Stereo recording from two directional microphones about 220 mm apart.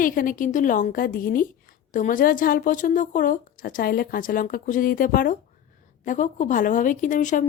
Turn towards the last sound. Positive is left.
turn(degrees=35)  # may be behind; listen again after turning